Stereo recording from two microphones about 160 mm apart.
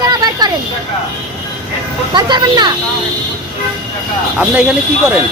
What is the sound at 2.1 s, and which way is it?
Speech, 30° right (ahead or behind).